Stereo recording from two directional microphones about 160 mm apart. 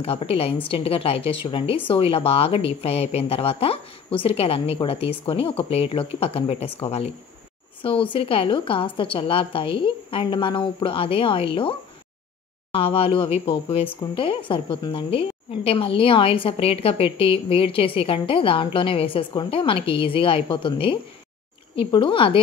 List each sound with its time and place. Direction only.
0.0 s a woman's voice: 35° left (ahead or behind)
12.7 s a woman's voice: 35° left (ahead or behind)